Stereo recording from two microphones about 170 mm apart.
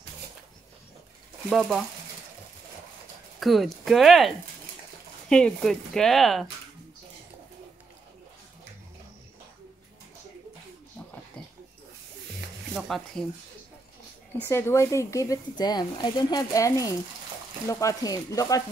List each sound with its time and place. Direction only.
1.5 s speech: centre (ahead or behind)
3.3 s speech: centre (ahead or behind)
5.3 s speech: 5° left (ahead or behind)
12.7 s speech: centre (ahead or behind)
14.4 s speech: 15° left (ahead or behind)